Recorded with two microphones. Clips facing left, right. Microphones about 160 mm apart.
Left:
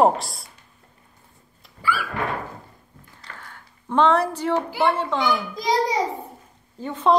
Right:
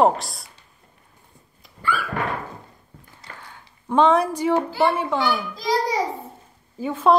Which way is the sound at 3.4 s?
15° right (ahead or behind).